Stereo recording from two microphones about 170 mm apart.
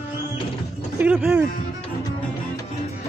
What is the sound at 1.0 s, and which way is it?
Music, 5° right (ahead or behind).